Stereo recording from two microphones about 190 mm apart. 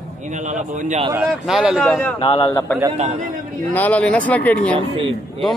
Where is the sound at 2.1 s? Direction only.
30° left (ahead or behind).